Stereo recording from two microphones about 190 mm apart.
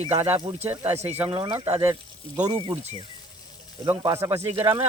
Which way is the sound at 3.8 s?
15° right (ahead or behind).